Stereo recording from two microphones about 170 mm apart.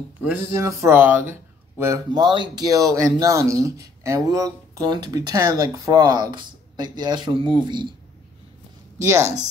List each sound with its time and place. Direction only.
0.2 s speech: 15° right (ahead or behind)